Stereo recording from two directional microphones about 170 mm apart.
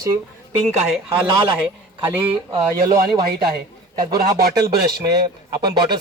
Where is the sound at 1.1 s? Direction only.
10° right (ahead or behind).